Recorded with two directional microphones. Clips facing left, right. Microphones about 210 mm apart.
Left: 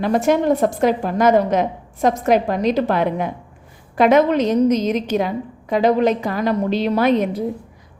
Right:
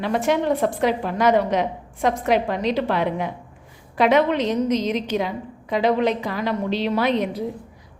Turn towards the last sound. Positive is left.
turn(degrees=45)  # may be behind; listen again after turning